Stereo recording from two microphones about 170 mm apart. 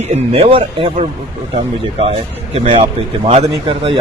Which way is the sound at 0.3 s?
35° right (ahead or behind).